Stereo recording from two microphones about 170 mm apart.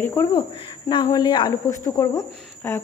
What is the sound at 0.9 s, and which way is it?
Speech, 25° left (ahead or behind).